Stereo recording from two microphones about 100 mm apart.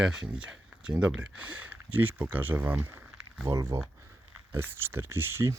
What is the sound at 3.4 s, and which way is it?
Speech, 35° right (ahead or behind).